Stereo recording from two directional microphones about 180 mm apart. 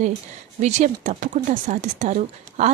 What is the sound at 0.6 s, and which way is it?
A woman's voice, 40° right (ahead or behind).